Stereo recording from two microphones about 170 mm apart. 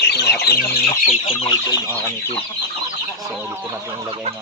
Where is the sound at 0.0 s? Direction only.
75° left (ahead or behind).